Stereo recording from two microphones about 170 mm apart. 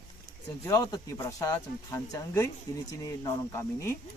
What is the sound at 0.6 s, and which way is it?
Speech, 20° left (ahead or behind).